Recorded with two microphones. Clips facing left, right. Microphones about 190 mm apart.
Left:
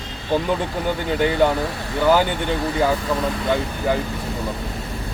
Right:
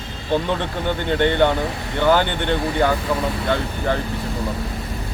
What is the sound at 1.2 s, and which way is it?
Speech, 5° left (ahead or behind).